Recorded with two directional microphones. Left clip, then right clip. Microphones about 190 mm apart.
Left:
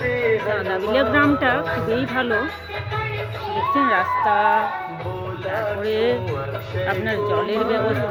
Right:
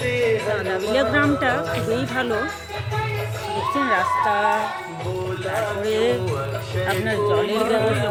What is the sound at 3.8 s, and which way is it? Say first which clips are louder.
Speech: even; centre (ahead or behind).